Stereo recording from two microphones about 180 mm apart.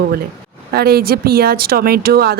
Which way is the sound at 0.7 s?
60° right (ahead or behind).